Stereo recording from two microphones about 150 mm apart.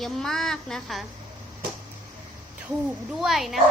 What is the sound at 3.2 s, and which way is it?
Speech, centre (ahead or behind).